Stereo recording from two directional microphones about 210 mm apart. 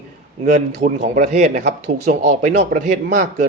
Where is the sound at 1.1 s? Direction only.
35° right (ahead or behind).